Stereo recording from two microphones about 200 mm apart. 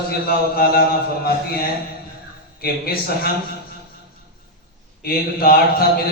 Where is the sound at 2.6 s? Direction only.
50° left (ahead or behind).